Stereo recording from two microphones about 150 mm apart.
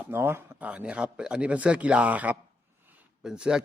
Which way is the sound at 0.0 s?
15° right (ahead or behind).